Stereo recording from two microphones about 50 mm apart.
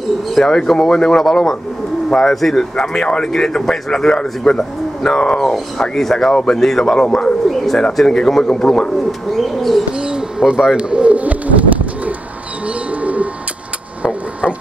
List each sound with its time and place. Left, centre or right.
0.3 s speech: centre
7.4 s bird: centre
7.9 s speech: centre
9.3 s bird: centre
9.9 s bird: centre
13.0 s bird: right